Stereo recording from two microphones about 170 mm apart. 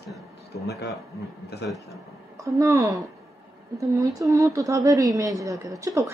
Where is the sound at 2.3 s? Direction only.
20° right (ahead or behind).